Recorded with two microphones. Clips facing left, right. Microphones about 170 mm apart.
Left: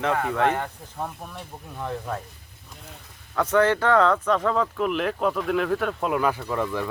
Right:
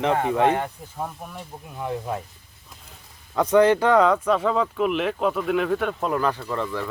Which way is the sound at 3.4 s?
15° right (ahead or behind).